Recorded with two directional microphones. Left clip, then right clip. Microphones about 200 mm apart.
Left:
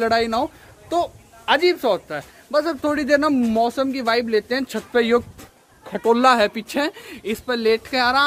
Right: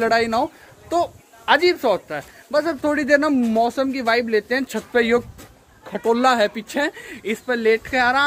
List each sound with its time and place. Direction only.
0.0 s speech: 10° left (ahead or behind)
5.9 s speech: 30° left (ahead or behind)